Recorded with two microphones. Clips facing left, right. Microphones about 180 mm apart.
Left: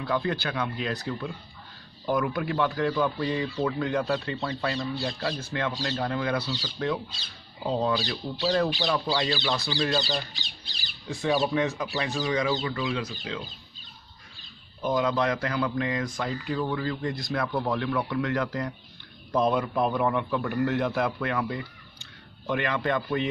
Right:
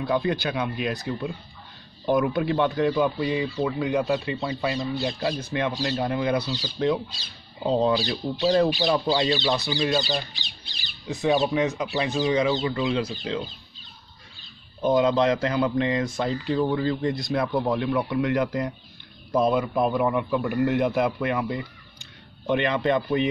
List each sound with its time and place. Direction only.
0.0 s speech: 20° right (ahead or behind)
9.8 s speech: 5° right (ahead or behind)
10.3 s speech: 40° left (ahead or behind)
11.1 s speech: 20° right (ahead or behind)
14.8 s speech: 25° right (ahead or behind)
19.3 s speech: 5° right (ahead or behind)